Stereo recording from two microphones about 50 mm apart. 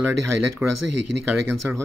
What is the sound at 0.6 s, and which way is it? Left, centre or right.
Speech, right.